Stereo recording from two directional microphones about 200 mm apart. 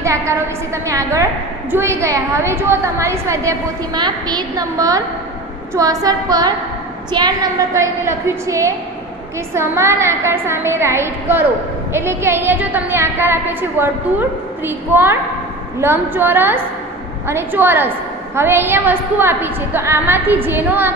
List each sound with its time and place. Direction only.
0.0 s a woman's voice: 15° right (ahead or behind)
5.8 s a sound: 15° right (ahead or behind)
7.1 s a woman's voice: 20° right (ahead or behind)
14.9 s a woman's voice: 10° right (ahead or behind)